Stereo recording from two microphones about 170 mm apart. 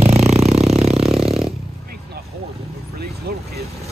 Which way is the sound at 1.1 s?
35° right (ahead or behind).